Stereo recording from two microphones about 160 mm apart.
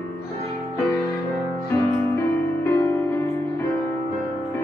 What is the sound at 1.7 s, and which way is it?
Music, 20° left (ahead or behind).